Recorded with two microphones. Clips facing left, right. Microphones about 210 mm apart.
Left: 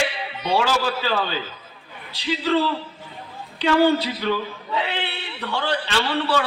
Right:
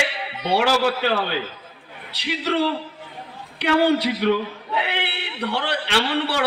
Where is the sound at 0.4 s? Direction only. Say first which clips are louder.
Right 2 dB; 65° right (ahead or behind).